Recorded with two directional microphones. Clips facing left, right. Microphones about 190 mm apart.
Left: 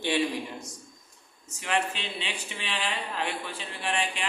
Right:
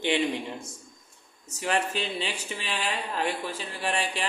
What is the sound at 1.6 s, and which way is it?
Speech, 40° right (ahead or behind).